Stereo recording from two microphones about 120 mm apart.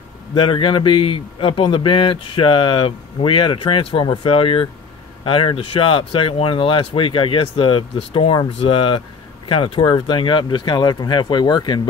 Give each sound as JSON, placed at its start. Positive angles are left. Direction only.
{"t": 0.3, "sound": "a man's voice", "side_deg": 45}